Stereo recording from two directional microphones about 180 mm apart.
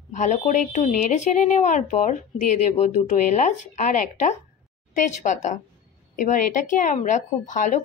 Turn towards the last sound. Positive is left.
turn(degrees=45)  # may be behind; listen again after turning